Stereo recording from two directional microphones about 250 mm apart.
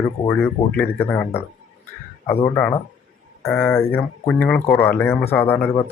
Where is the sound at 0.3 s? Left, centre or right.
Centre.